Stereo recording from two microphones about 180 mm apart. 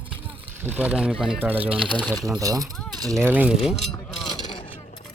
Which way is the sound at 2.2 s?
20° right (ahead or behind).